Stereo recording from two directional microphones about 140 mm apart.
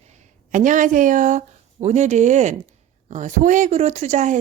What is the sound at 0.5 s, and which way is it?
Speech, 70° right (ahead or behind).